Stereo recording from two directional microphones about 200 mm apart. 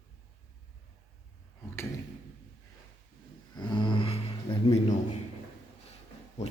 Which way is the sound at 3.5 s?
20° left (ahead or behind).